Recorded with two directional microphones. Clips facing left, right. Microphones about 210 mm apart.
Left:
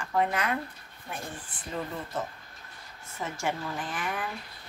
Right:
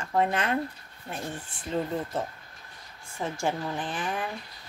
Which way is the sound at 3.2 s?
30° right (ahead or behind).